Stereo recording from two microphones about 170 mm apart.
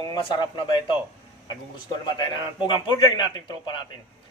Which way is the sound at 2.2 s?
25° left (ahead or behind).